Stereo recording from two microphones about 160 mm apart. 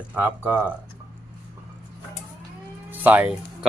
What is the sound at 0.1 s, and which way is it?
Speech, 10° right (ahead or behind).